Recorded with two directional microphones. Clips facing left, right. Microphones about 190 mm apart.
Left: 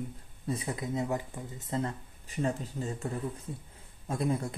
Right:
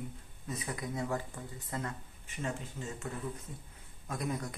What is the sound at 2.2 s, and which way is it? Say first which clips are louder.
Speech: left 7 dB; 35° left (ahead or behind).